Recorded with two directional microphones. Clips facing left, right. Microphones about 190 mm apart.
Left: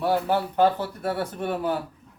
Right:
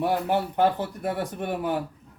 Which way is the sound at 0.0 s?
15° right (ahead or behind).